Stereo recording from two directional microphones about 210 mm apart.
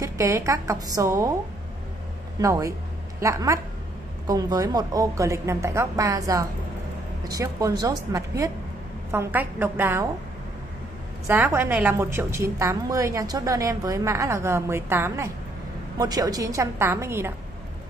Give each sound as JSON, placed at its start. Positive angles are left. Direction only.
{"t": 0.0, "sound": "a woman's voice", "side_deg": -15}
{"t": 2.4, "sound": "a woman's voice", "side_deg": -15}
{"t": 11.2, "sound": "a woman's voice", "side_deg": -10}